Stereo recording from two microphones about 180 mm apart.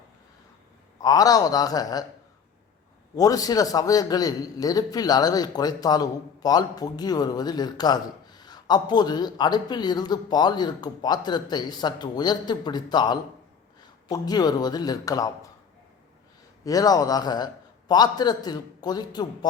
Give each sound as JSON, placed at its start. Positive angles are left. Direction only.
{"t": 1.0, "sound": "a man's voice", "side_deg": 20}
{"t": 3.2, "sound": "a man's voice", "side_deg": 20}
{"t": 16.6, "sound": "a man's voice", "side_deg": 20}